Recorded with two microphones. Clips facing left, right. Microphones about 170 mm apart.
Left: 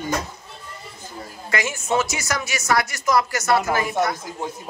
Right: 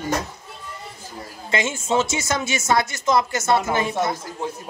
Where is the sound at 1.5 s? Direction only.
25° right (ahead or behind).